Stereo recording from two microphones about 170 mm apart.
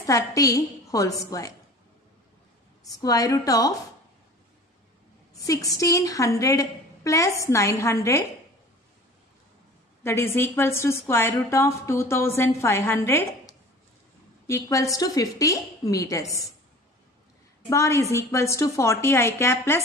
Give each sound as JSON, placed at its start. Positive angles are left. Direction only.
{"t": 0.0, "sound": "a woman's voice", "side_deg": 20}
{"t": 2.8, "sound": "a woman's voice", "side_deg": 20}
{"t": 5.3, "sound": "a woman's voice", "side_deg": 20}
{"t": 10.0, "sound": "a woman's voice", "side_deg": 15}
{"t": 17.6, "sound": "a woman's voice", "side_deg": 15}